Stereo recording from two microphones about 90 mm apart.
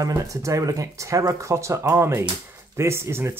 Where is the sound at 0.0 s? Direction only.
40° right (ahead or behind).